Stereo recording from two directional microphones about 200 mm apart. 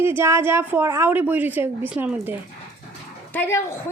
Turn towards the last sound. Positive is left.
turn(degrees=10)  # may be behind; listen again after turning